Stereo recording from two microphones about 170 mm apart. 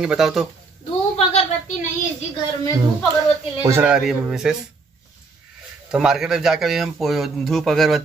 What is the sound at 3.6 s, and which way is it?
Speech, 15° right (ahead or behind).